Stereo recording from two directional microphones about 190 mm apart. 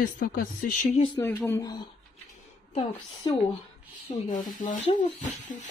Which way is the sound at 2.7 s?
25° left (ahead or behind).